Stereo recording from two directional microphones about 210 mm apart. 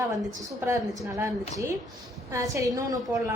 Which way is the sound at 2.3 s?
15° right (ahead or behind).